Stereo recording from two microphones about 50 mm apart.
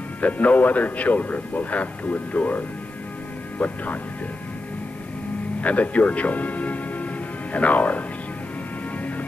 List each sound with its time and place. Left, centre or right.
0.2 s speech: left
5.6 s speech: left